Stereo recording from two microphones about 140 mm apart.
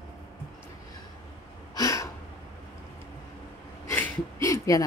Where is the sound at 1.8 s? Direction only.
25° left (ahead or behind).